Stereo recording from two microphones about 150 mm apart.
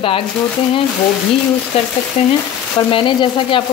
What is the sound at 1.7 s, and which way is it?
Speech, 40° left (ahead or behind).